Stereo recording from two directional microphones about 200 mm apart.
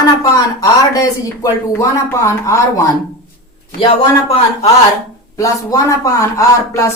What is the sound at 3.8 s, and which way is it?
Speech, 30° left (ahead or behind).